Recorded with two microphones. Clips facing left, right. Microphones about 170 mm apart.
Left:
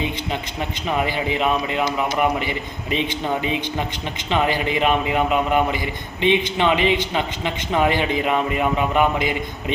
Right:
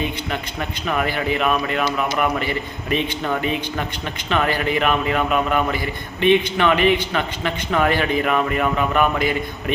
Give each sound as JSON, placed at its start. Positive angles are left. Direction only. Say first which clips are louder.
{"t": 0.9, "sound": "a man's voice", "louder": "right 1 dB", "side_deg": 20}